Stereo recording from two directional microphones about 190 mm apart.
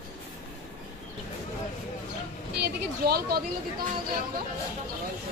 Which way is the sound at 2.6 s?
55° right (ahead or behind).